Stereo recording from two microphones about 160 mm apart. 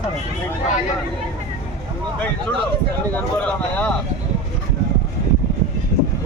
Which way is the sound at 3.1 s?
10° left (ahead or behind).